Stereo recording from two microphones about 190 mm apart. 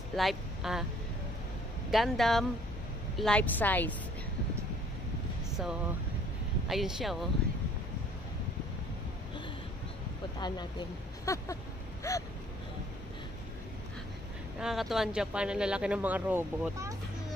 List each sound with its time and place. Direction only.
0.1 s speech: centre (ahead or behind)
1.9 s a woman's voice: centre (ahead or behind)
6.7 s speech: centre (ahead or behind)
10.4 s a woman's voice: 20° left (ahead or behind)
14.6 s speech: centre (ahead or behind)